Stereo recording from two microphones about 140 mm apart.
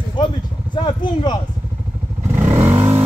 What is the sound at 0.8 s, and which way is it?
Speech, 30° left (ahead or behind).